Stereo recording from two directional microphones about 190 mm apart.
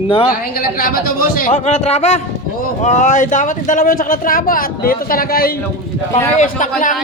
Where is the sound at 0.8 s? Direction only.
50° left (ahead or behind).